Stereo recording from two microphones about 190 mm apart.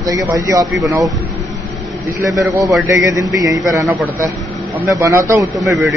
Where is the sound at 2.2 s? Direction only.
15° right (ahead or behind).